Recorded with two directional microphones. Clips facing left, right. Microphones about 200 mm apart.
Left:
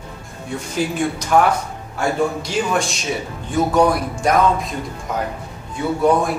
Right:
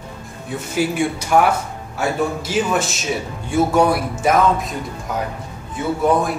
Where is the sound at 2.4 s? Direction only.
5° right (ahead or behind).